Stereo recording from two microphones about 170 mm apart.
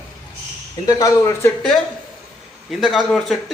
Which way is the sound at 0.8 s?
20° left (ahead or behind).